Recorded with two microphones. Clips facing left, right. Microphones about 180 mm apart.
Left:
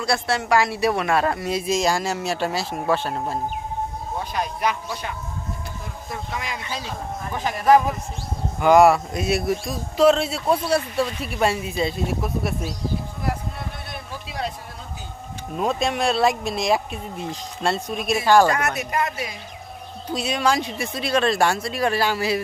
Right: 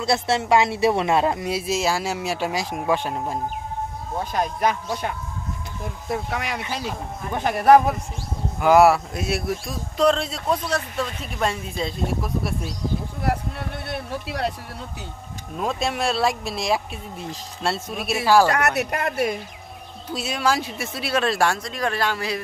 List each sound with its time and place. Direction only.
0.0 s speech: 25° right (ahead or behind)
4.2 s speech: 45° right (ahead or behind)
6.0 s speech: 65° right (ahead or behind)
8.5 s speech: 5° right (ahead or behind)
13.2 s a sound: 65° right (ahead or behind)
15.5 s speech: centre (ahead or behind)
18.5 s speech: 65° right (ahead or behind)
20.1 s speech: 5° right (ahead or behind)